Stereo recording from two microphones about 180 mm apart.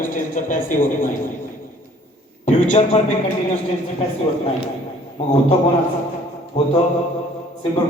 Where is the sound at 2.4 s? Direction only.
40° left (ahead or behind).